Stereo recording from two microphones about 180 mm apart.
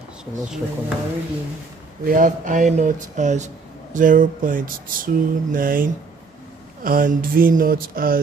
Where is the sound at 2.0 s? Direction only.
45° right (ahead or behind).